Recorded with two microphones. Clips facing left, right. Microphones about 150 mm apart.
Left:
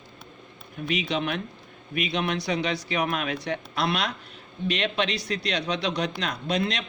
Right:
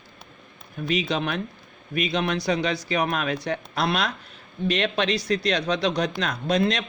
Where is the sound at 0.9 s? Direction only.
40° right (ahead or behind).